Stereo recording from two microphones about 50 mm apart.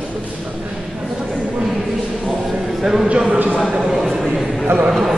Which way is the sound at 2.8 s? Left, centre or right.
Centre.